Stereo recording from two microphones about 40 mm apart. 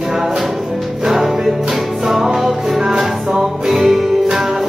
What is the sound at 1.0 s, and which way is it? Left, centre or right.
Music, centre.